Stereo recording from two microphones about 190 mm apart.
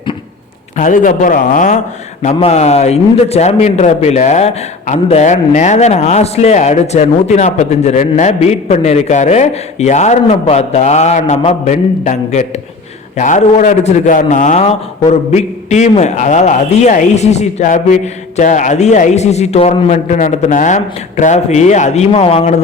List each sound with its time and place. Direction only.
0.8 s a man's voice: 45° left (ahead or behind)